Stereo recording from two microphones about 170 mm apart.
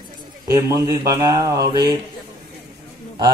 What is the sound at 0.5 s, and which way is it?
A man's voice, 20° right (ahead or behind).